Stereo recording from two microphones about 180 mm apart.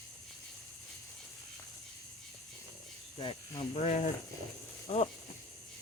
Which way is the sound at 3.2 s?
25° left (ahead or behind).